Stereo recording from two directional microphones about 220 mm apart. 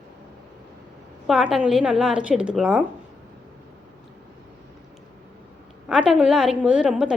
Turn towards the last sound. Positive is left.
turn(degrees=-5)  # may be behind; listen again after turning